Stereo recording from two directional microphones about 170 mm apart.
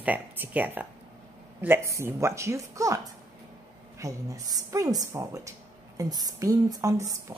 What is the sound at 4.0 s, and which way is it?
A woman's voice, 20° right (ahead or behind).